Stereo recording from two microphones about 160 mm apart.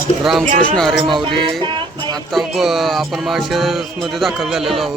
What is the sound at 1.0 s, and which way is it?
Speech, 30° right (ahead or behind).